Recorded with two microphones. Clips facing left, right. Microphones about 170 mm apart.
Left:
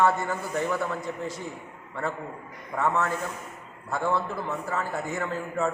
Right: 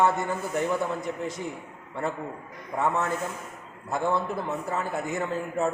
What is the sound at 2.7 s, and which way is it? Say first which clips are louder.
A man's voice: even; 15° right (ahead or behind).